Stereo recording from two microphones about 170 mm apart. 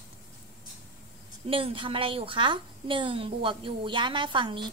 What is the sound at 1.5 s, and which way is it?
A woman's voice, 30° right (ahead or behind).